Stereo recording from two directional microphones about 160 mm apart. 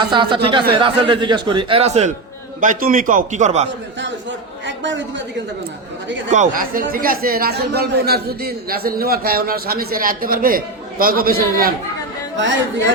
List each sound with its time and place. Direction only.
0.0 s speech: 30° right (ahead or behind)
2.6 s a man's voice: 55° right (ahead or behind)
6.3 s speech: 55° right (ahead or behind)